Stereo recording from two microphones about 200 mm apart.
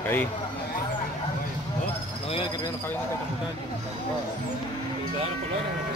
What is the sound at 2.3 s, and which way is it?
Speech, 25° left (ahead or behind).